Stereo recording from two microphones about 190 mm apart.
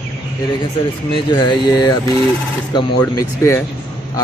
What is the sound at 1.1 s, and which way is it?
Speech, 25° left (ahead or behind).